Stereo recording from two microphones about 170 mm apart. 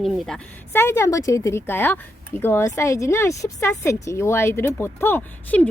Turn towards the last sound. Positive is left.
turn(degrees=10)  # may be behind; listen again after turning